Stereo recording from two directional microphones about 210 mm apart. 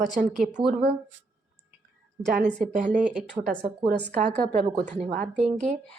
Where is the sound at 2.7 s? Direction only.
35° right (ahead or behind).